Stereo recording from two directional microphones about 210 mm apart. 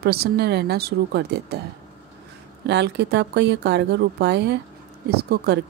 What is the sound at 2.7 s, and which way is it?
Speech, 55° right (ahead or behind).